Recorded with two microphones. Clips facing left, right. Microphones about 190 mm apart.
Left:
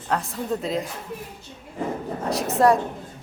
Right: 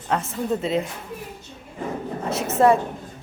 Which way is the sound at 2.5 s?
Centre (ahead or behind).